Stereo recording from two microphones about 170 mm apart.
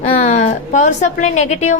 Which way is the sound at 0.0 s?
45° left (ahead or behind).